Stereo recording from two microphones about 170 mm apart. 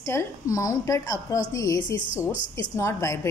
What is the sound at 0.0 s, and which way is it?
A woman's voice, 15° left (ahead or behind).